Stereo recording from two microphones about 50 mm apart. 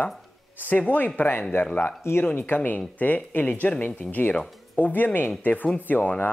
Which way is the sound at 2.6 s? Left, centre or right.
Left.